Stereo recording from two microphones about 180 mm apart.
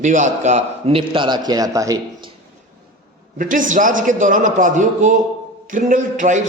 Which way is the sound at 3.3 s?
50° right (ahead or behind).